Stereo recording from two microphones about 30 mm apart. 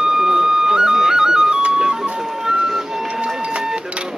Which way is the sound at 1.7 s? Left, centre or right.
Right.